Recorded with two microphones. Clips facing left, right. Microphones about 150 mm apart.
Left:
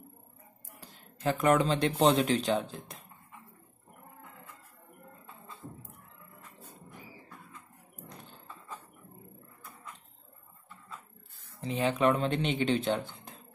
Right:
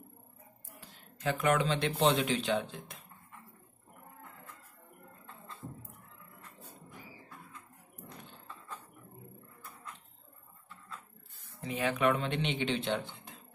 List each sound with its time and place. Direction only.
1.2 s speech: 35° left (ahead or behind)
11.6 s speech: 30° left (ahead or behind)